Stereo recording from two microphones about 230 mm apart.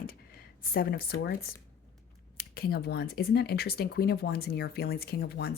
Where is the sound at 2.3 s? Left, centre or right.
Left.